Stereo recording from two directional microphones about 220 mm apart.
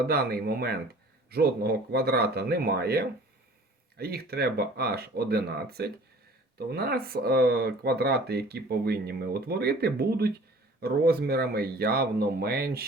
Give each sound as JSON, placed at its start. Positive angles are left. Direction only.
{"t": 0.0, "sound": "speech", "side_deg": -45}